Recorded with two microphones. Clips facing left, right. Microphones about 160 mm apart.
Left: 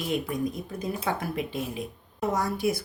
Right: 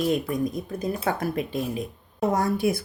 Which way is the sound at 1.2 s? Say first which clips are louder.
Right 4 dB; 45° right (ahead or behind).